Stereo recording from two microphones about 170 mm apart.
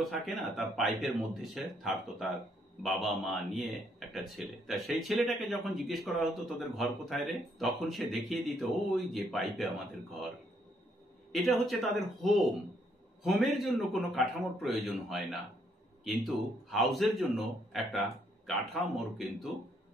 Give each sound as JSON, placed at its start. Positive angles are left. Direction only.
{"t": 0.0, "sound": "speech", "side_deg": 0}
{"t": 11.3, "sound": "a man's voice", "side_deg": 0}